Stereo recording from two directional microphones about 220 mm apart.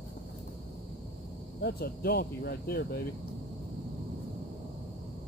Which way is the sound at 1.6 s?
45° left (ahead or behind).